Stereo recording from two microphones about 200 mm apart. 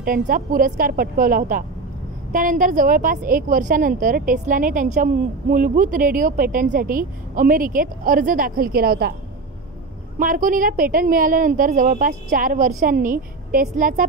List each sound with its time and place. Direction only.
0.0 s a woman's voice: 45° right (ahead or behind)
10.1 s a woman's voice: 40° right (ahead or behind)